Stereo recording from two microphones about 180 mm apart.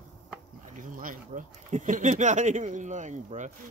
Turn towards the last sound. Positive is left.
turn(degrees=-40)  # may be behind; listen again after turning